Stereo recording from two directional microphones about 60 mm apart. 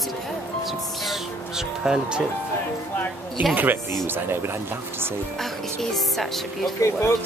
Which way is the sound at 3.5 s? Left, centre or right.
Right.